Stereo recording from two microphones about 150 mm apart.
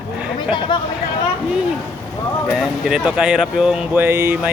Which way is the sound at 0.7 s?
30° left (ahead or behind).